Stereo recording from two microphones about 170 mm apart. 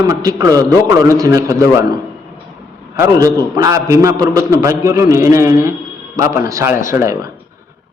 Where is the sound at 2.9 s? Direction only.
20° right (ahead or behind).